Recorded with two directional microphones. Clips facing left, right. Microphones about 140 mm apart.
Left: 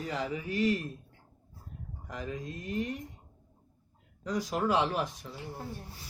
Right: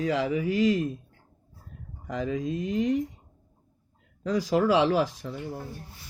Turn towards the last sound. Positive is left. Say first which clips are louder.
# right 8 dB
turn(degrees=-90)